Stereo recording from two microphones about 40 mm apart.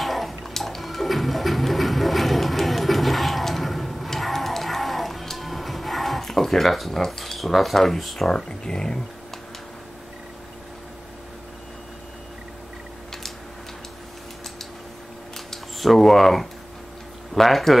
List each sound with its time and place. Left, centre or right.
0.0 s a sound: centre
7.1 s speech: centre
8.5 s speech: centre
15.3 s camera: centre
17.3 s a man's voice: centre